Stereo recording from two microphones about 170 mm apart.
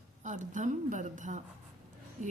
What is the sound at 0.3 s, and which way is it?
Speech, 45° right (ahead or behind).